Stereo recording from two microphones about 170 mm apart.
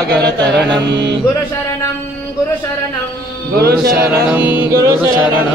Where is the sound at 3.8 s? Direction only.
15° right (ahead or behind).